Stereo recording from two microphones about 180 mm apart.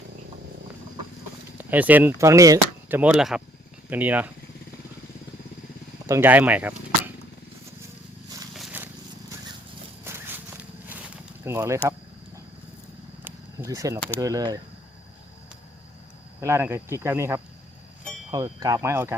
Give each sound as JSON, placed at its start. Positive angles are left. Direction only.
{"t": 1.5, "sound": "speech", "side_deg": -10}
{"t": 3.0, "sound": "speech", "side_deg": -5}
{"t": 6.1, "sound": "speech", "side_deg": -10}
{"t": 8.5, "sound": "a sound", "side_deg": -10}
{"t": 10.0, "sound": "walk", "side_deg": -15}
{"t": 13.2, "sound": "a sound", "side_deg": -15}
{"t": 14.2, "sound": "speech", "side_deg": -20}
{"t": 16.4, "sound": "speech", "side_deg": -15}